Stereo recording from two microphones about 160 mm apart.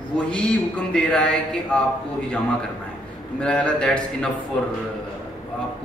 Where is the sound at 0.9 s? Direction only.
5° left (ahead or behind).